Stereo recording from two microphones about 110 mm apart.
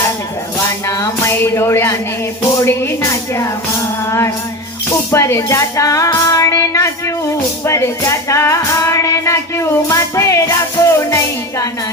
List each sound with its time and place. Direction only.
0.6 s female singing: 25° left (ahead or behind)
5.1 s female singing: 25° left (ahead or behind)